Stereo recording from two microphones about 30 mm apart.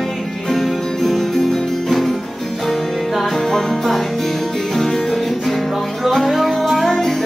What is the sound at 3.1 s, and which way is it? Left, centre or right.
Music, centre.